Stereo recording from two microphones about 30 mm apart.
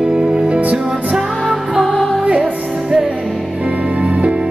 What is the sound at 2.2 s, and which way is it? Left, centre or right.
Music, right.